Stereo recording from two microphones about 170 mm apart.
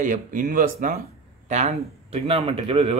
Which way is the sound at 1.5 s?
40° right (ahead or behind).